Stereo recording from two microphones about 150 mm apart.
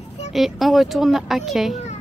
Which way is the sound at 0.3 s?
Centre (ahead or behind).